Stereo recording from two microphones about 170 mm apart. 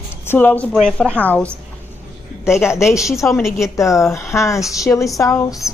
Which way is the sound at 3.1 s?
20° left (ahead or behind).